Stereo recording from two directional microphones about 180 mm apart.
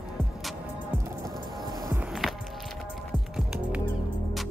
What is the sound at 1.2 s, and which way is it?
Music, 15° right (ahead or behind).